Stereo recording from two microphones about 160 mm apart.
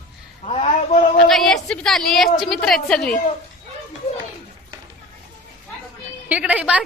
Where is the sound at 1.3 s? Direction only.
Centre (ahead or behind).